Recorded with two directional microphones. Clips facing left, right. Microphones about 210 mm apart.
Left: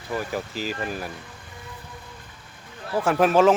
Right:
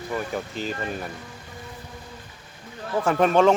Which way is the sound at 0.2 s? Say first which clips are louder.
Even; centre (ahead or behind).